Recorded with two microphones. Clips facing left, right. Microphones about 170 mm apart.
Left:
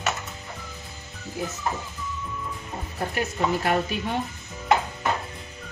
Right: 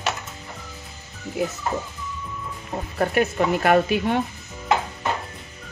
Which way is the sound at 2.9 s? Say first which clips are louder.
Right 8 dB; 65° right (ahead or behind).